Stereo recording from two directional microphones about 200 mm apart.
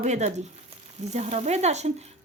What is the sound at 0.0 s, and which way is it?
A woman's voice, 35° right (ahead or behind).